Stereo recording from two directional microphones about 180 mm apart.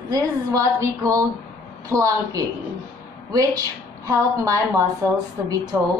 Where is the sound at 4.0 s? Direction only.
15° right (ahead or behind).